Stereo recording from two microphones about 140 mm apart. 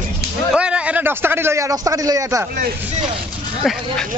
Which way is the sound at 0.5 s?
10° right (ahead or behind).